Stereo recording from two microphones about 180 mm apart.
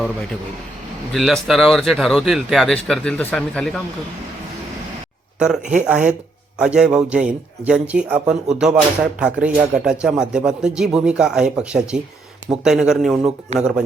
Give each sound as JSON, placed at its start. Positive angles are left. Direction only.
{"t": 1.1, "sound": "speech", "side_deg": 0}
{"t": 5.4, "sound": "speech", "side_deg": -5}